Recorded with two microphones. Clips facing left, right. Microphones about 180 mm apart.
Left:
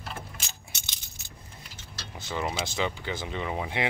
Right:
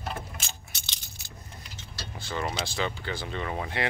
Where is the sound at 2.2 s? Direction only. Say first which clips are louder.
Left 1 dB; 15° left (ahead or behind).